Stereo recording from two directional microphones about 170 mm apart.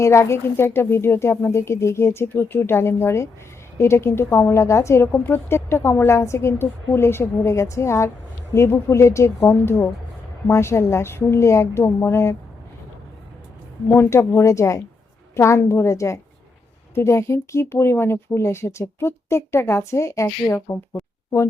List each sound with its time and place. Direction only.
0.0 s speech: 15° left (ahead or behind)
13.8 s speech: 15° left (ahead or behind)